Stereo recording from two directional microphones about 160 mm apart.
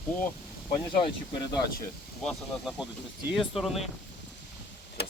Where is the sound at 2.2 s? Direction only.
5° left (ahead or behind).